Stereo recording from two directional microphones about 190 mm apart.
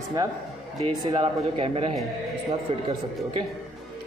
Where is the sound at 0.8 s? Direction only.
25° right (ahead or behind).